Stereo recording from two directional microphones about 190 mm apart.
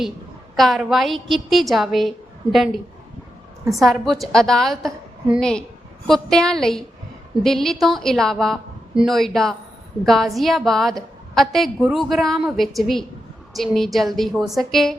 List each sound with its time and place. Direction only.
0.5 s a woman's voice: centre (ahead or behind)